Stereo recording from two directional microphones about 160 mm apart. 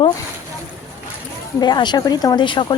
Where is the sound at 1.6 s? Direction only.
25° left (ahead or behind).